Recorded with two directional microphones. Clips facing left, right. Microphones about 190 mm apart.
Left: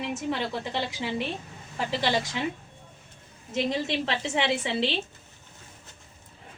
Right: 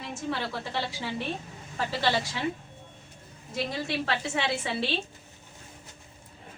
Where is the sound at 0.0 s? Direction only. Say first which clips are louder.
Left 3 dB; 15° left (ahead or behind).